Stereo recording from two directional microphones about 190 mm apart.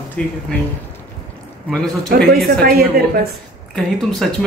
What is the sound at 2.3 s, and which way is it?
Speech, 55° right (ahead or behind).